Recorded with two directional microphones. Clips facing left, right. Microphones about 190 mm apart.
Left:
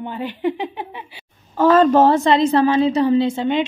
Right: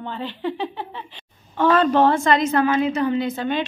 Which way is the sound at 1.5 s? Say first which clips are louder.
Left 4 dB; 40° left (ahead or behind).